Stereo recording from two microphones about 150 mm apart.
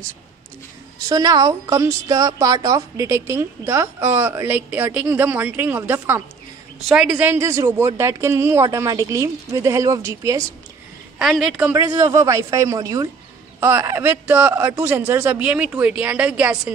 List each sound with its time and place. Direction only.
1.0 s a woman's voice: 25° right (ahead or behind)
6.9 s a woman's voice: 5° right (ahead or behind)
7.2 s speech: 15° right (ahead or behind)
11.1 s a woman's voice: 5° right (ahead or behind)
11.7 s a woman's voice: 20° right (ahead or behind)